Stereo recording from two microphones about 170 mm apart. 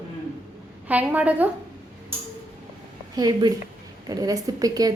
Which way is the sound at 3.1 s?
20° right (ahead or behind).